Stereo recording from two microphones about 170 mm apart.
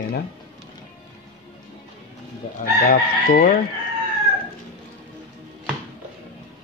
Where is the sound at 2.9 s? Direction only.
55° left (ahead or behind).